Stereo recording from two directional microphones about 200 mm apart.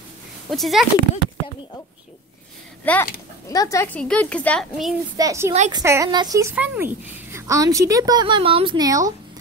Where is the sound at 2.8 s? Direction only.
10° left (ahead or behind).